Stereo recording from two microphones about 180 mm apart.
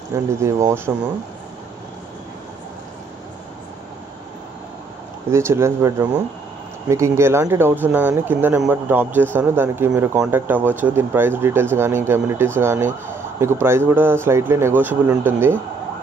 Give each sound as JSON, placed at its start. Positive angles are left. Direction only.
{"t": 0.1, "sound": "speech", "side_deg": -15}
{"t": 5.3, "sound": "speech", "side_deg": -15}